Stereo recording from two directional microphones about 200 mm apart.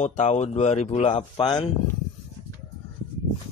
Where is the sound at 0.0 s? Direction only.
35° left (ahead or behind).